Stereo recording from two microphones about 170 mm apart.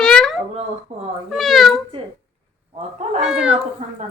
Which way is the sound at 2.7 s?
40° right (ahead or behind).